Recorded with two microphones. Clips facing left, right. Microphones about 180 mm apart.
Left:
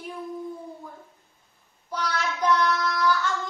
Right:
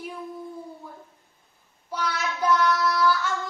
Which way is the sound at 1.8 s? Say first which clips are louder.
Even; 5° right (ahead or behind).